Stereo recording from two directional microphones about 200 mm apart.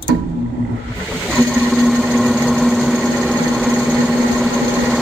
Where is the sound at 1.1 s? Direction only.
10° right (ahead or behind).